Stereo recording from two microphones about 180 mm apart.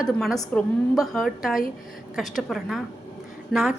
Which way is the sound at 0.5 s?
Centre (ahead or behind).